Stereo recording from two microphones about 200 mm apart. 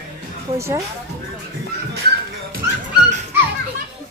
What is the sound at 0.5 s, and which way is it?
Speech, 15° right (ahead or behind).